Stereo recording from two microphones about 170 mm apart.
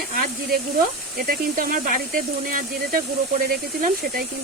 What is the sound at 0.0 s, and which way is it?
Speech, 60° right (ahead or behind).